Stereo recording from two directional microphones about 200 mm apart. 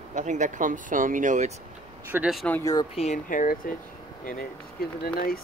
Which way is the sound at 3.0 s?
40° left (ahead or behind).